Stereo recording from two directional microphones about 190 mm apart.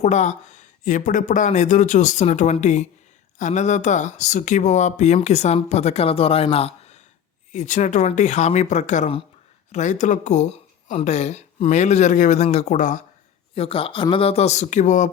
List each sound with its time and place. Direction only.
0.0 s speech: 40° left (ahead or behind)
13.5 s speech: 30° left (ahead or behind)